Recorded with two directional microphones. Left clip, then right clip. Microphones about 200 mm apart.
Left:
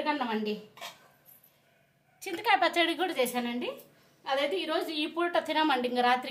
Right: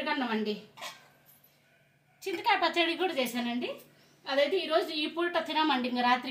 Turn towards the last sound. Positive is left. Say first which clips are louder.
# left 1 dB
turn(degrees=45)  # may be behind; listen again after turning